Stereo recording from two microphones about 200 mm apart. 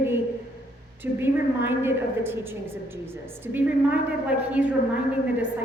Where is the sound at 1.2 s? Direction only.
10° right (ahead or behind).